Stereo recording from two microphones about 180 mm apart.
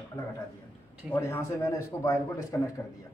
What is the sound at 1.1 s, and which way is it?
A man's voice, 15° left (ahead or behind).